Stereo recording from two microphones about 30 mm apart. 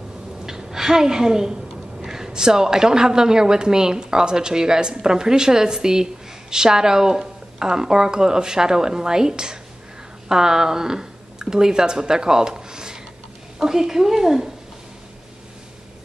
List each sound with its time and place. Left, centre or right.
0.5 s a woman's voice: centre